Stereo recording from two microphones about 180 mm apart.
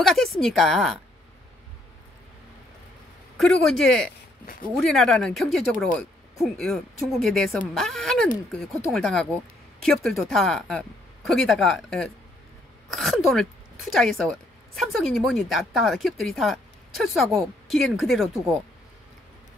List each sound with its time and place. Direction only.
0.0 s speech: centre (ahead or behind)
3.3 s speech: 5° left (ahead or behind)